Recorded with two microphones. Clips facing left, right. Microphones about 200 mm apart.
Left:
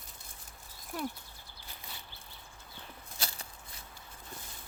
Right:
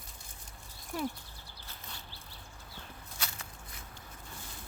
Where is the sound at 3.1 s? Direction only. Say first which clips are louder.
Left 1 dB; 35° left (ahead or behind).